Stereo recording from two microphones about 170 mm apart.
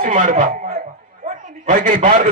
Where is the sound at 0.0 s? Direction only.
50° right (ahead or behind).